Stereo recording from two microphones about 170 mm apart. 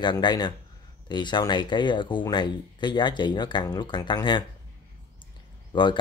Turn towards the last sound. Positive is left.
turn(degrees=25)  # may be behind; listen again after turning